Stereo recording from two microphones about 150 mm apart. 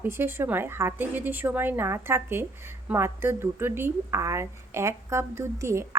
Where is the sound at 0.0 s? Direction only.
15° right (ahead or behind).